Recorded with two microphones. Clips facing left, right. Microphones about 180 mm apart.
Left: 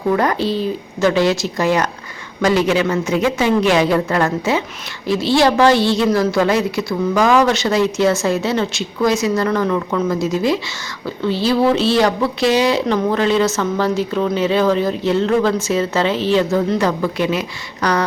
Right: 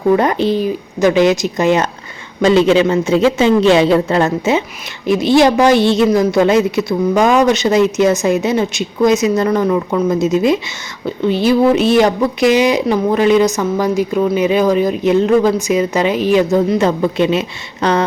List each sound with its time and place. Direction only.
0.1 s a woman's voice: 20° right (ahead or behind)